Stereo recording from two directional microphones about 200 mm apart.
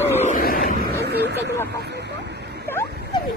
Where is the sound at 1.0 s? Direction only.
55° right (ahead or behind).